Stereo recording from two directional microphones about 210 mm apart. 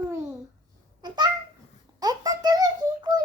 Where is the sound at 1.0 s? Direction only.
20° right (ahead or behind).